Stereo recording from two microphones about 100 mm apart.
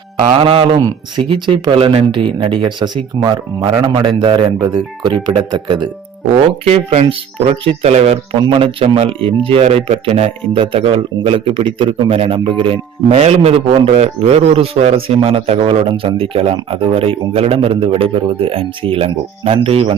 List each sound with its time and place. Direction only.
0.3 s speech: 65° right (ahead or behind)
0.8 s speech: 40° right (ahead or behind)
1.5 s speech: 60° right (ahead or behind)
4.5 s speech: 40° right (ahead or behind)
6.7 s speech: 75° right (ahead or behind); by 8.4 s 90° right
8.4 s a man's voice: 60° right (ahead or behind); by 10.3 s 90° right
10.5 s a man's voice: 65° right (ahead or behind)
16.0 s speech: 70° right (ahead or behind)